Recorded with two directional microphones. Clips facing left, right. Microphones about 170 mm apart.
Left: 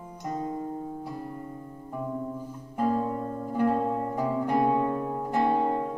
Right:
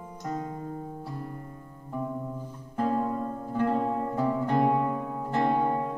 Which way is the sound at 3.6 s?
10° left (ahead or behind).